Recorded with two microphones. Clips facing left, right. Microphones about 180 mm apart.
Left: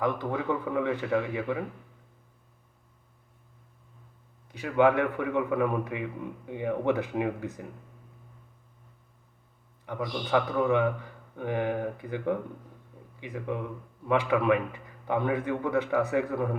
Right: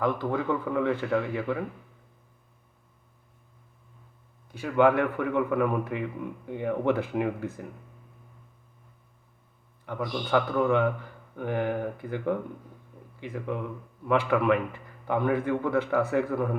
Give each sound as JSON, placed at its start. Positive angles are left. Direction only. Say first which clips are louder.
{"t": 0.0, "sound": "a man's voice", "louder": "right 2 dB", "side_deg": 15}
{"t": 4.5, "sound": "a man's voice", "louder": "right 1 dB", "side_deg": 15}
{"t": 9.8, "sound": "a man's voice", "louder": "right 1 dB", "side_deg": 20}